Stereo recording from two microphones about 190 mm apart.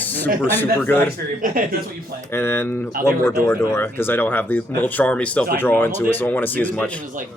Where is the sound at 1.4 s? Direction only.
45° right (ahead or behind).